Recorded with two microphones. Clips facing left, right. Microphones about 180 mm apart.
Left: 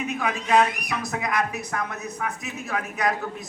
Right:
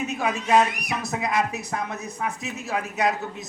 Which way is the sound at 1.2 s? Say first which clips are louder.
Right 3 dB; 25° right (ahead or behind).